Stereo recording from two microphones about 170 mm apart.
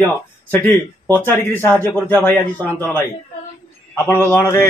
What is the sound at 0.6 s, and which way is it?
Speech, 10° left (ahead or behind).